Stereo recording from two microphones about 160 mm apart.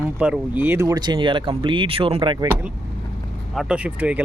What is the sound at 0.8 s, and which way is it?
Speech, 25° right (ahead or behind).